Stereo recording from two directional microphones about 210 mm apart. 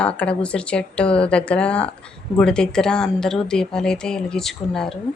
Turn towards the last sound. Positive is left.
turn(degrees=0)  # may be behind; listen again after turning